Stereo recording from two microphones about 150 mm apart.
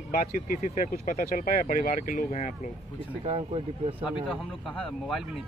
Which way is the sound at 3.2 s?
40° right (ahead or behind).